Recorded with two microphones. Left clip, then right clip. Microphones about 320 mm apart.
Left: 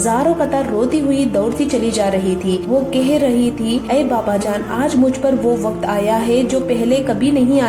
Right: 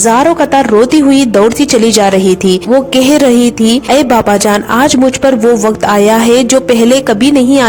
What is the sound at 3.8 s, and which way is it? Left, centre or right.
A woman's voice, right.